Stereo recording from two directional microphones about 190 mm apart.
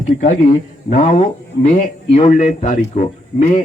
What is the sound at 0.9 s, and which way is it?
A man's voice, 40° left (ahead or behind).